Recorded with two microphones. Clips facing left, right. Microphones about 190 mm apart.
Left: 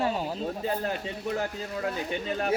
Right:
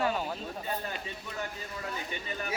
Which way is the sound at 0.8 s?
70° left (ahead or behind).